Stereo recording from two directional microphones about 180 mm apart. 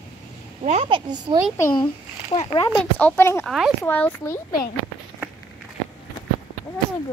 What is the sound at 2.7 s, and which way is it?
Speech, 10° left (ahead or behind).